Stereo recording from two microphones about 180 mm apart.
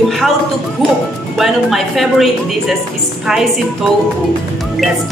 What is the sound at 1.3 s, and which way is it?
A child's voice, centre (ahead or behind).